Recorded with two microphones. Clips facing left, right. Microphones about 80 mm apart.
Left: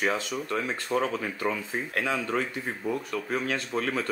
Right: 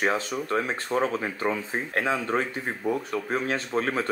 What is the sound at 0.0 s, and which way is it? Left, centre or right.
Speech, right.